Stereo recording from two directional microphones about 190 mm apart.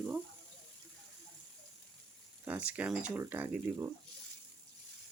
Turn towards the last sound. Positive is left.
turn(degrees=-10)  # may be behind; listen again after turning